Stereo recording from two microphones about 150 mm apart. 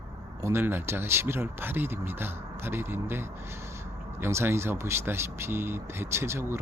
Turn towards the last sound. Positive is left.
turn(degrees=-15)  # may be behind; listen again after turning